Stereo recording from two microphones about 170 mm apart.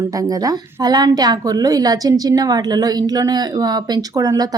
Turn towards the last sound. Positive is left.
turn(degrees=-20)  # may be behind; listen again after turning